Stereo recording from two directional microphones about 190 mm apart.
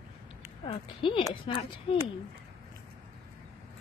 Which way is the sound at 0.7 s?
25° left (ahead or behind).